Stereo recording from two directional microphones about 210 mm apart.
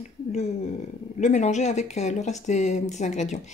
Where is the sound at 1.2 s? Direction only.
35° left (ahead or behind).